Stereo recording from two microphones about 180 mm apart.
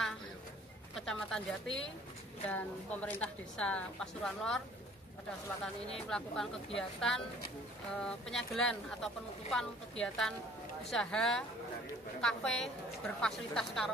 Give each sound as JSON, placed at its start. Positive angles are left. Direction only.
{"t": 0.9, "sound": "a woman's voice", "side_deg": 0}
{"t": 5.9, "sound": "speech", "side_deg": 5}